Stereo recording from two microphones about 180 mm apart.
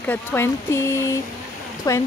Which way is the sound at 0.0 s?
10° left (ahead or behind).